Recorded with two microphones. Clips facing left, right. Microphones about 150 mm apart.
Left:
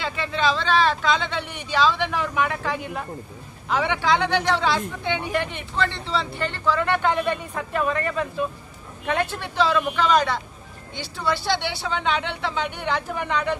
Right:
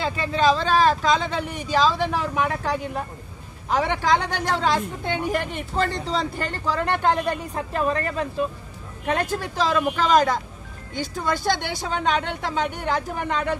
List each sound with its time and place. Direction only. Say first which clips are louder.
0.0 s speech: right 3 dB; 40° right (ahead or behind)